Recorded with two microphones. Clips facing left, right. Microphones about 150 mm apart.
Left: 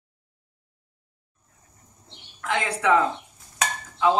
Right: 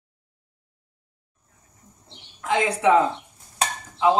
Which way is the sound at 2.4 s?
20° right (ahead or behind).